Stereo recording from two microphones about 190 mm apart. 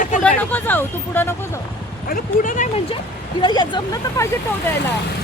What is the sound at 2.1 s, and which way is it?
Speech, 45° left (ahead or behind).